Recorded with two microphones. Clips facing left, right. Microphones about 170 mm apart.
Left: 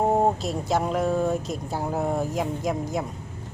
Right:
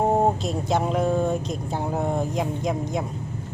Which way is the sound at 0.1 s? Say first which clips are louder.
Right 1 dB; centre (ahead or behind).